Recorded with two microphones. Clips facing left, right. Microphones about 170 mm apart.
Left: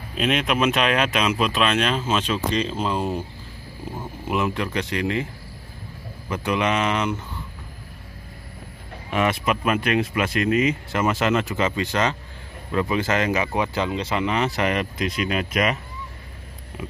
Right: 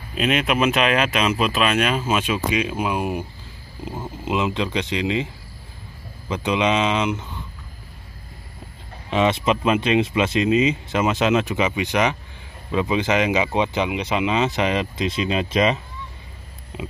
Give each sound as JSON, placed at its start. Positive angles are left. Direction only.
{"t": 0.1, "sound": "speech", "side_deg": 0}
{"t": 9.1, "sound": "speech", "side_deg": -25}